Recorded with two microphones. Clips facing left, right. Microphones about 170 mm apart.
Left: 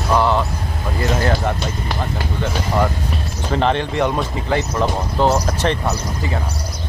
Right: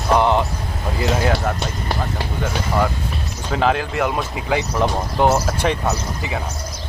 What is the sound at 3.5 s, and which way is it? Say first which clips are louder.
Speech: left 1 dB; 5° right (ahead or behind).